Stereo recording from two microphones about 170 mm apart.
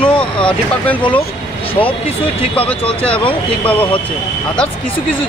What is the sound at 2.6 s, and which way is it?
Speech, 30° left (ahead or behind).